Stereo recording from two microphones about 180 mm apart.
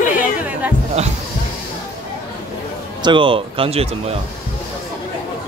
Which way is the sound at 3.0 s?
25° right (ahead or behind).